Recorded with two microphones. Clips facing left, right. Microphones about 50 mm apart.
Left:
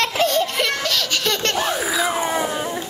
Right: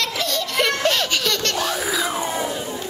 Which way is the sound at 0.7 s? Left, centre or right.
Right.